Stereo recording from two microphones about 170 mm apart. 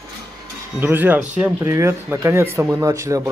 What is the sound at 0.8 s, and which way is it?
Speech, 10° right (ahead or behind).